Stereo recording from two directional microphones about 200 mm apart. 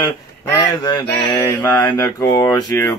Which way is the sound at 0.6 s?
20° left (ahead or behind).